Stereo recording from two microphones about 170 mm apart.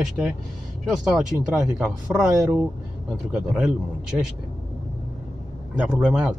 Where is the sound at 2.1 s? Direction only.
15° right (ahead or behind).